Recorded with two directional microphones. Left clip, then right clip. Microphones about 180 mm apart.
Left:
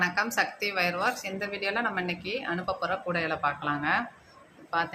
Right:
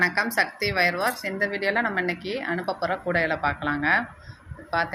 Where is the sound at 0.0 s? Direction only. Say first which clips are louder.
Right 4 dB; 20° right (ahead or behind).